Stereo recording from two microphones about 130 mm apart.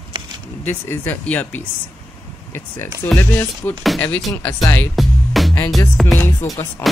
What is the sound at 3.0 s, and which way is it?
Speech, 15° left (ahead or behind).